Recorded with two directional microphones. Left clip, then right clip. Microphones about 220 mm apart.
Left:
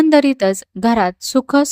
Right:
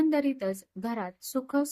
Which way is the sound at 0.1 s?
45° left (ahead or behind).